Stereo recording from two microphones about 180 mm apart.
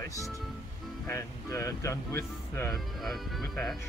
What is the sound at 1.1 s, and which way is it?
Speech, 15° left (ahead or behind).